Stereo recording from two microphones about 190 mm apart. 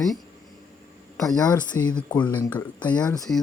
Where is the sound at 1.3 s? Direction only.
20° left (ahead or behind).